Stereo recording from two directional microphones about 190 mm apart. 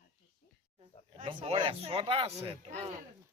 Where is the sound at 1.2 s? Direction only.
25° right (ahead or behind).